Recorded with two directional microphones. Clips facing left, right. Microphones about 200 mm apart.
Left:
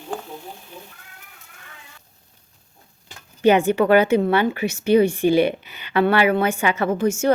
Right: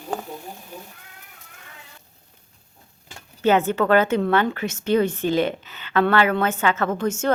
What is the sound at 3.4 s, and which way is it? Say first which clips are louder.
A woman's voice: left 3 dB; 15° left (ahead or behind).